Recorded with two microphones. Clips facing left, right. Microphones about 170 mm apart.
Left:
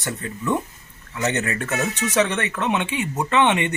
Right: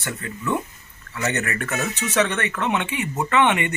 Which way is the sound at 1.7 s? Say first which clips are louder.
Left 2 dB; 15° left (ahead or behind).